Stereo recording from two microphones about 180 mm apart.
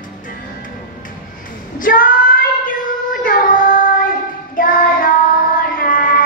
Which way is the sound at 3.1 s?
50° left (ahead or behind).